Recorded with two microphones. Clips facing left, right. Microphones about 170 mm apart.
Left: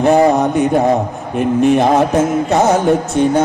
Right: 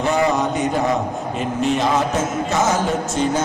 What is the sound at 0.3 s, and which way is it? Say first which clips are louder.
Mantra: left 7 dB; 60° left (ahead or behind).